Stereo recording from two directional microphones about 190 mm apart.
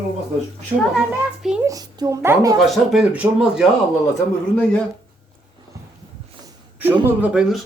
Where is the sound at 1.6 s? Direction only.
20° right (ahead or behind).